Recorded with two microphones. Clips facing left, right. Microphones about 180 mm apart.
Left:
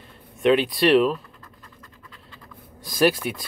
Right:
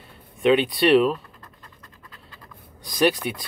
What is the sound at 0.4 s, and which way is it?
Speech, centre (ahead or behind).